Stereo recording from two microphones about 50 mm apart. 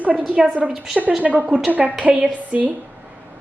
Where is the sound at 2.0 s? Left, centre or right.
Right.